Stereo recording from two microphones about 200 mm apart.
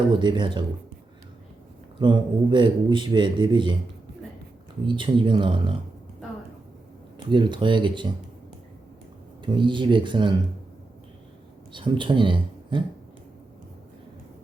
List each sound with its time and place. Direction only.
0.1 s a man's voice: 25° right (ahead or behind)
2.0 s a man's voice: 25° right (ahead or behind)
4.9 s a man's voice: 25° right (ahead or behind)
7.2 s a man's voice: 25° right (ahead or behind)
9.4 s a man's voice: 25° right (ahead or behind)
11.7 s speech: 25° right (ahead or behind)